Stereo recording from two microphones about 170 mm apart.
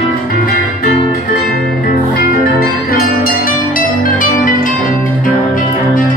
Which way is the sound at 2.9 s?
55° left (ahead or behind).